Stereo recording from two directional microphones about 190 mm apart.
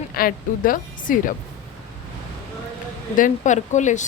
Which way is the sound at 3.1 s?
40° left (ahead or behind).